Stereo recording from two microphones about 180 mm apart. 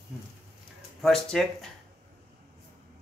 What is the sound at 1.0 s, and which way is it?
Speech, centre (ahead or behind).